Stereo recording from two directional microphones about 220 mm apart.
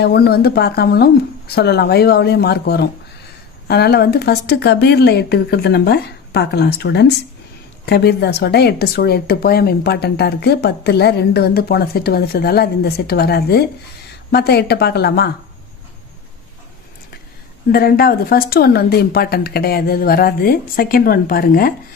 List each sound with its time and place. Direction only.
0.0 s speech: 45° left (ahead or behind)
17.7 s speech: 40° left (ahead or behind)